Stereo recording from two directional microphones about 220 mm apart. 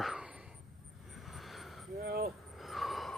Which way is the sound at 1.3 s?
Centre (ahead or behind).